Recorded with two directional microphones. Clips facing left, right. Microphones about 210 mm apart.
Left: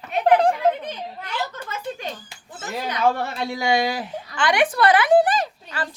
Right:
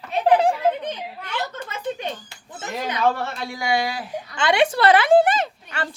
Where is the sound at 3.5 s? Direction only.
25° left (ahead or behind).